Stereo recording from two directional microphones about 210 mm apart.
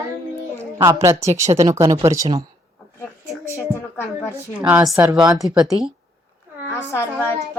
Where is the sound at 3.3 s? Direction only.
10° left (ahead or behind).